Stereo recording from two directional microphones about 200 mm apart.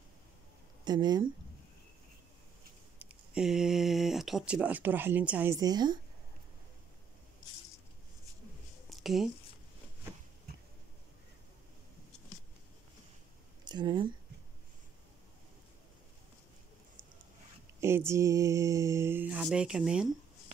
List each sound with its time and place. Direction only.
0.8 s speech: 20° right (ahead or behind)
3.0 s speech: 5° right (ahead or behind)
8.8 s a sound: centre (ahead or behind)
13.7 s speech: 20° right (ahead or behind)
17.7 s speech: 15° right (ahead or behind)